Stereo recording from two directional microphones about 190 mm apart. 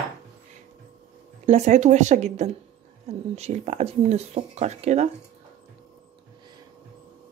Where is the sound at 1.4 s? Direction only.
35° right (ahead or behind).